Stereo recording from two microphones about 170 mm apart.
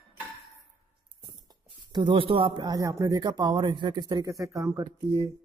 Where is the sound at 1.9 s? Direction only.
30° right (ahead or behind).